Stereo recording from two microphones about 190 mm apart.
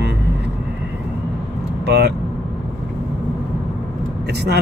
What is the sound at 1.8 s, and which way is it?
Speech, 60° right (ahead or behind).